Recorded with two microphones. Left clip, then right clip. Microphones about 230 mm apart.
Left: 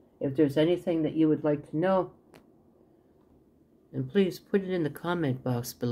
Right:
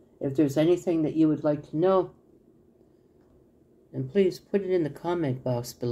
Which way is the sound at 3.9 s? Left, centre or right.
Left.